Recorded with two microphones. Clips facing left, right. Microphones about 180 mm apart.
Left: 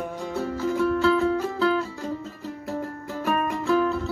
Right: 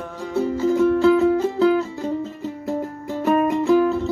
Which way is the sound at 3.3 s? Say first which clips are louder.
Right 7 dB; 25° right (ahead or behind).